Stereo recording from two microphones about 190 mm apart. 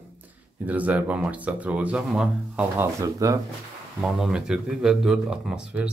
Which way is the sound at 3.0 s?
15° right (ahead or behind).